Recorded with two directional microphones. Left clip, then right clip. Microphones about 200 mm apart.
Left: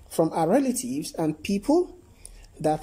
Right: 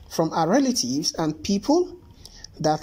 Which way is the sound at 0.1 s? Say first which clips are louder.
Right 1 dB; centre (ahead or behind).